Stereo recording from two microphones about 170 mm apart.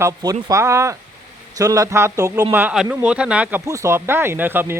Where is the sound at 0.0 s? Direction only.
20° right (ahead or behind); by 3.6 s 5° right (ahead or behind).